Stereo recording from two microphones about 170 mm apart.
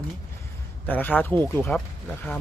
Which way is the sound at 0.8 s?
10° left (ahead or behind).